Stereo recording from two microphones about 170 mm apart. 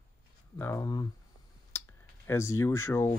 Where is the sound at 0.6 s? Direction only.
15° left (ahead or behind).